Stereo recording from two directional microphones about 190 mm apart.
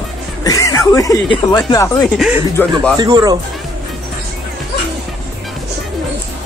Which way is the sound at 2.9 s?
20° right (ahead or behind).